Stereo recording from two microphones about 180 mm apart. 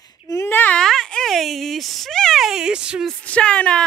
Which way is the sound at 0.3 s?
15° left (ahead or behind).